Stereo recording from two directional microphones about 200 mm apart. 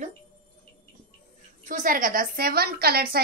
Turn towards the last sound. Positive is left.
turn(degrees=-50)  # may be behind; listen again after turning